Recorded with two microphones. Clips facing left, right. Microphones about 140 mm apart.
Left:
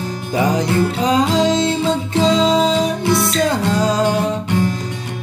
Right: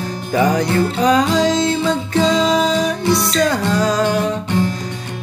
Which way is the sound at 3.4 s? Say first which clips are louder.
Even; 25° left (ahead or behind).